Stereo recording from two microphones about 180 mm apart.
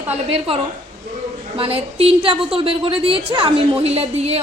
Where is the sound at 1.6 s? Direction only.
30° right (ahead or behind).